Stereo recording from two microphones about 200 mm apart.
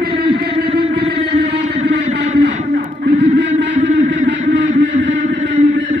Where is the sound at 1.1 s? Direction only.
60° right (ahead or behind).